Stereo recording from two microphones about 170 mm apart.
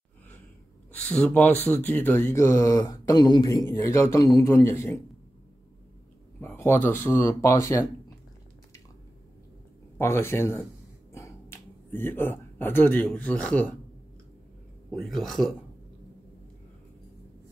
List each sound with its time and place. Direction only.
1.1 s speech: 10° left (ahead or behind)
6.4 s speech: 15° left (ahead or behind)
9.9 s speech: 15° left (ahead or behind)
11.1 s a sound: 15° left (ahead or behind)
15.0 s speech: centre (ahead or behind)